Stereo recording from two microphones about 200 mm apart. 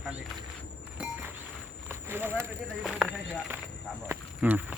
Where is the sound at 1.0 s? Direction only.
5° right (ahead or behind).